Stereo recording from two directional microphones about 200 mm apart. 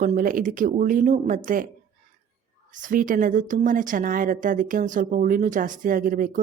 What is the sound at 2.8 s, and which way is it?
Speech, 40° right (ahead or behind).